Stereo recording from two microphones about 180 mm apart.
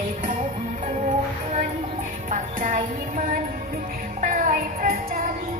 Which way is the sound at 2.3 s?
45° right (ahead or behind).